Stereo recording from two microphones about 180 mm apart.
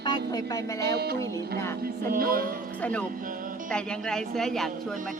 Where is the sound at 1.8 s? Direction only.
55° right (ahead or behind).